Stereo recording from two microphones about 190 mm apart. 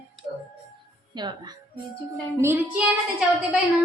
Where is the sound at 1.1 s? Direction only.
25° right (ahead or behind).